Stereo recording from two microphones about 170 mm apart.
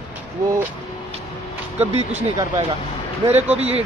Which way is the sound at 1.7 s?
40° right (ahead or behind).